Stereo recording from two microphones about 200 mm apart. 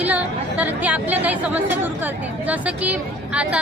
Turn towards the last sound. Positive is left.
turn(degrees=-5)  # may be behind; listen again after turning